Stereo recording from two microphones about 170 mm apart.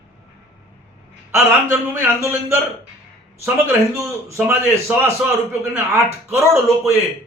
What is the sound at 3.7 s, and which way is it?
A man's voice, 15° right (ahead or behind).